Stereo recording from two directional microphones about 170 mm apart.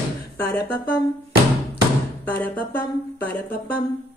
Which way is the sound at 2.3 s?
10° left (ahead or behind).